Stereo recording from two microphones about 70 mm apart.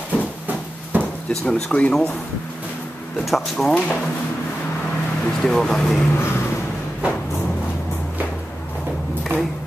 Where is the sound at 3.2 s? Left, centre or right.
Centre.